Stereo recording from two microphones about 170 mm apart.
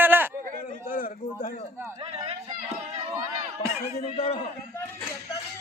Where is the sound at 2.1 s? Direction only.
40° right (ahead or behind).